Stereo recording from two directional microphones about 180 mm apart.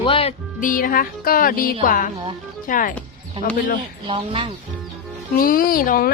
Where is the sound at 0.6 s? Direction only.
50° left (ahead or behind).